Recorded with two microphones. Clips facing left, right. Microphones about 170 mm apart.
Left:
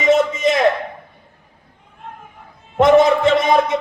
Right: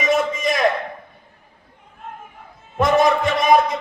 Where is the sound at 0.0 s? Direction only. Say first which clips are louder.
Left 5 dB; 25° left (ahead or behind).